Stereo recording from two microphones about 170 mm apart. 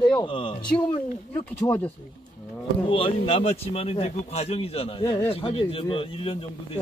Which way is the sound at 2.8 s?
30° left (ahead or behind).